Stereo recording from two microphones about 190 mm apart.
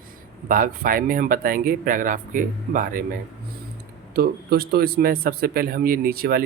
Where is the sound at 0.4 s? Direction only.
45° right (ahead or behind).